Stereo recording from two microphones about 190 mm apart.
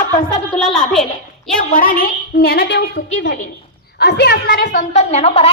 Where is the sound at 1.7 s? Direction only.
45° left (ahead or behind).